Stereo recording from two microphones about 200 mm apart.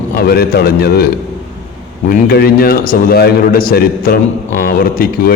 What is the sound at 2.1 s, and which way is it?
Speech, 50° left (ahead or behind).